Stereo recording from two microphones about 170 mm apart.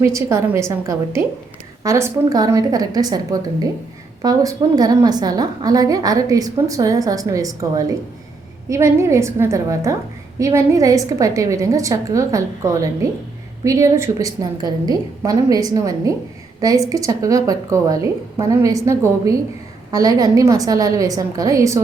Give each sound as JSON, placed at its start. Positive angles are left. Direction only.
{"t": 0.0, "sound": "a woman's voice", "side_deg": -15}
{"t": 4.2, "sound": "a woman's voice", "side_deg": -20}